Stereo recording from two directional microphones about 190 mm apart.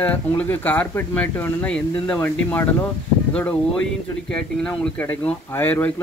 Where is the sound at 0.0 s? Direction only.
10° left (ahead or behind).